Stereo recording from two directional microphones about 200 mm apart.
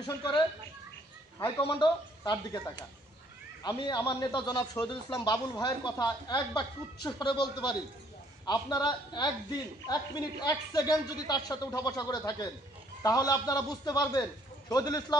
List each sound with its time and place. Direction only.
0.0 s a man's voice: 25° left (ahead or behind)
1.6 s a man's voice: 25° left (ahead or behind)
8.5 s a man's voice: 20° left (ahead or behind)